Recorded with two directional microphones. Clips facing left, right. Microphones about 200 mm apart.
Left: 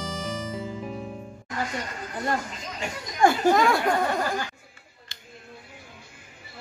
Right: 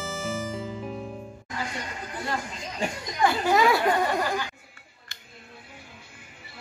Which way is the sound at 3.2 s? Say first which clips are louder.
Left 4 dB; 45° left (ahead or behind).